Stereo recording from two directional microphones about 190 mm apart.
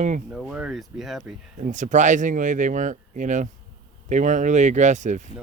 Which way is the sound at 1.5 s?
40° right (ahead or behind).